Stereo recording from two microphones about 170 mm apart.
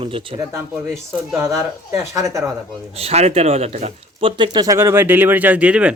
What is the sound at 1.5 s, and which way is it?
Speech, 15° right (ahead or behind).